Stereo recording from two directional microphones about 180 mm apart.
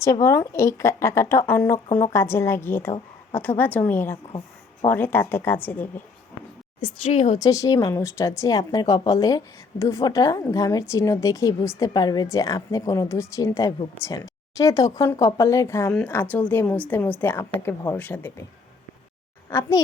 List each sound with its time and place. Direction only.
0.0 s a woman's voice: 15° left (ahead or behind)
6.8 s a woman's voice: 30° left (ahead or behind)
7.3 s a woman's voice: 20° left (ahead or behind)
19.5 s a woman's voice: 20° left (ahead or behind)